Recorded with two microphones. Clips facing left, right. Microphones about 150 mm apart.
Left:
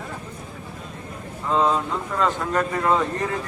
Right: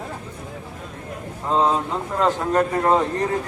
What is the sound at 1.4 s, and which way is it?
A man's voice, 30° right (ahead or behind).